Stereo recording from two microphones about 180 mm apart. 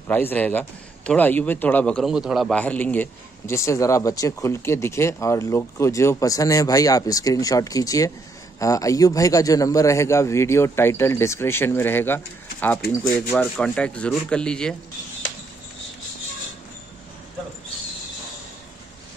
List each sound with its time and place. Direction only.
0.1 s a man's voice: 10° left (ahead or behind)